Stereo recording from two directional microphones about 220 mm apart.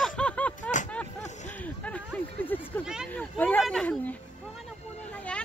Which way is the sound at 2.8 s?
5° right (ahead or behind).